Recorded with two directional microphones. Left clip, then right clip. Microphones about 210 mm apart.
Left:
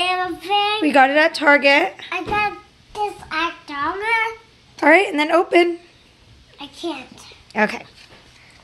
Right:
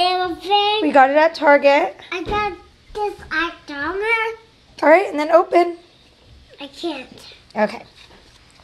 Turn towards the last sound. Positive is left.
turn(degrees=25)  # may be behind; listen again after turning